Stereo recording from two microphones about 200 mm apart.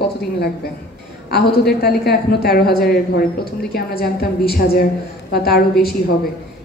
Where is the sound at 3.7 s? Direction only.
50° left (ahead or behind).